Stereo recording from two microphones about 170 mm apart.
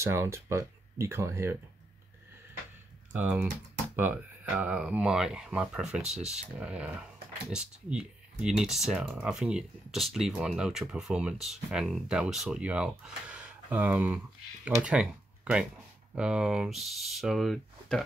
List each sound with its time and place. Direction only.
0.0 s speech: 15° right (ahead or behind)
3.1 s speech: 10° right (ahead or behind)
16.2 s speech: 5° right (ahead or behind)